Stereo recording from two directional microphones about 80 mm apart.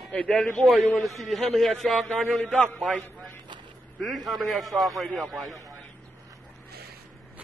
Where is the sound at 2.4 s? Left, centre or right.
Centre.